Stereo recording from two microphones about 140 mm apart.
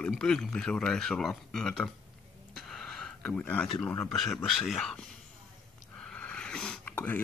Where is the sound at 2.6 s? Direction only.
Centre (ahead or behind).